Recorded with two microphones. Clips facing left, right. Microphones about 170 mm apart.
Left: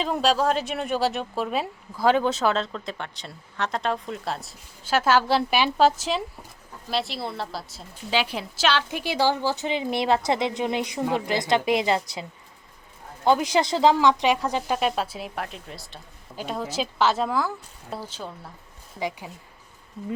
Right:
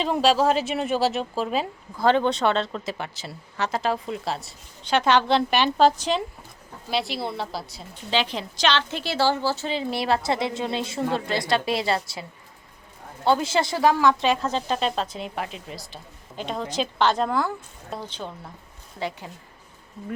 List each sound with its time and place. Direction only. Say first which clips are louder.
0.0 s a woman's voice: right 2 dB; centre (ahead or behind); by 12.2 s 20° left (ahead or behind)
13.2 s a woman's voice: left 1 dB; 15° left (ahead or behind)